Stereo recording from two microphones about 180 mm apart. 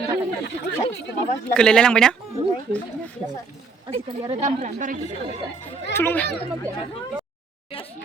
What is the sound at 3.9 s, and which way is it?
Speech, 35° right (ahead or behind).